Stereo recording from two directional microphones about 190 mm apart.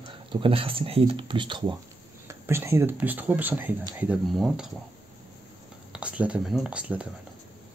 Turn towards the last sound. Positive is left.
turn(degrees=-5)  # may be behind; listen again after turning